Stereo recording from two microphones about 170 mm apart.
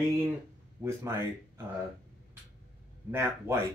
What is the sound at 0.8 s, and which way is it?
Speech, 15° right (ahead or behind).